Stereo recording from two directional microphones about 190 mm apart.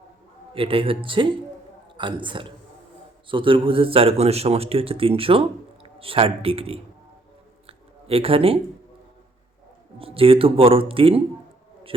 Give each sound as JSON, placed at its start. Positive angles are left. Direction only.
{"t": 0.5, "sound": "speech", "side_deg": -30}
{"t": 7.7, "sound": "a sound", "side_deg": -30}
{"t": 10.0, "sound": "speech", "side_deg": -30}